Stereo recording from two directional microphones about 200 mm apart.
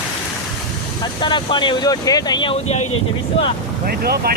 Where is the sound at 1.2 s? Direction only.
25° left (ahead or behind).